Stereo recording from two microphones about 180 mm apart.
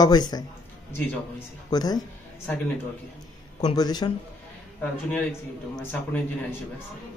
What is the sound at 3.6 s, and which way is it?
Speech, 25° left (ahead or behind).